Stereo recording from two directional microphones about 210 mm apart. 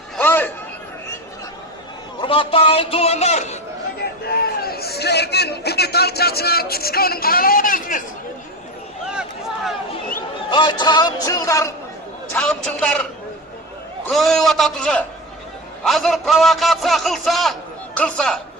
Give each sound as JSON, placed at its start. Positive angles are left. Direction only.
{"t": 0.2, "sound": "a sound", "side_deg": 10}
{"t": 2.2, "sound": "a man's voice", "side_deg": 25}
{"t": 4.4, "sound": "chatter", "side_deg": 50}
{"t": 10.5, "sound": "a man's voice", "side_deg": 20}
{"t": 12.3, "sound": "a man's voice", "side_deg": 5}